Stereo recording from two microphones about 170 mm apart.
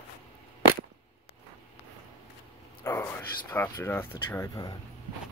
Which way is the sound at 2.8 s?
15° left (ahead or behind).